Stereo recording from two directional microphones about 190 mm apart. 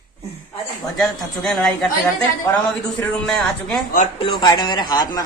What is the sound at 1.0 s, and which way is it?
Speech, centre (ahead or behind).